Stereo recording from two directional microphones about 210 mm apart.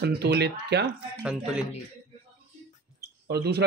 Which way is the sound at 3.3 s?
50° right (ahead or behind).